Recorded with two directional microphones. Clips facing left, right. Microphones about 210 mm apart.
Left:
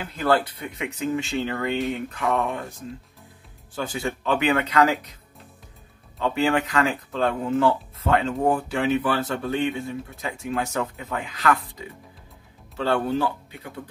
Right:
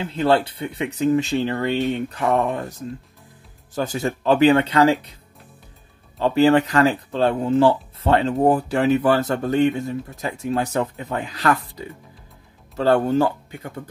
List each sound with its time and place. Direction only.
0.0 s speech: 25° right (ahead or behind)
3.7 s speech: 40° right (ahead or behind)
6.1 s speech: 35° right (ahead or behind)
12.7 s speech: 40° right (ahead or behind)